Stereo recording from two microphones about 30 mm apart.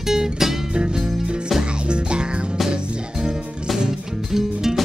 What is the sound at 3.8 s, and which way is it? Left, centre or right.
Music, centre.